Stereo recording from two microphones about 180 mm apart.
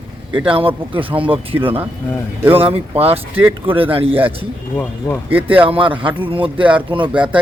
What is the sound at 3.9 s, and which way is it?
Speech, 30° right (ahead or behind).